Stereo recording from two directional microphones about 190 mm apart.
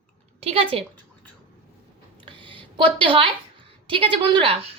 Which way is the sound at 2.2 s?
25° right (ahead or behind).